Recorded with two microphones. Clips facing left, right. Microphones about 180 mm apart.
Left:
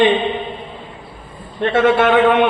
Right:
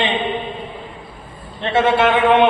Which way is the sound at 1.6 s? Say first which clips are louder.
Left 3 dB; 50° left (ahead or behind).